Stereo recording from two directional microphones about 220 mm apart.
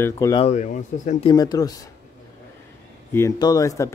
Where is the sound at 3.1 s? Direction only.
15° left (ahead or behind).